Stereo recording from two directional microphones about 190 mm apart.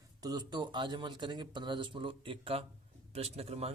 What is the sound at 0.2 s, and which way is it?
A man's voice, 20° right (ahead or behind).